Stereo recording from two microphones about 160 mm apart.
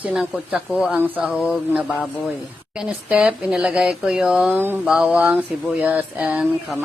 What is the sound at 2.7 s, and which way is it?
Speech, 5° right (ahead or behind).